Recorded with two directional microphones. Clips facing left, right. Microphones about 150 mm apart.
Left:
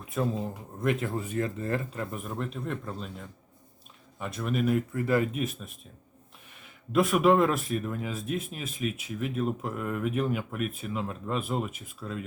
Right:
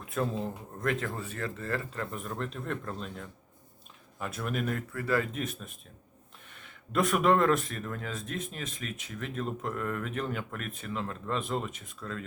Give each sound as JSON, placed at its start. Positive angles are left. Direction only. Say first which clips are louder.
{"t": 0.2, "sound": "a man's voice", "louder": "left 2 dB", "side_deg": 5}
{"t": 2.1, "sound": "a man's voice", "louder": "left 2 dB", "side_deg": 5}
{"t": 4.9, "sound": "speech", "louder": "left 4 dB", "side_deg": 20}
{"t": 5.3, "sound": "a man's voice", "louder": "left 3 dB", "side_deg": 5}
{"t": 6.9, "sound": "speech", "louder": "left 3 dB", "side_deg": 5}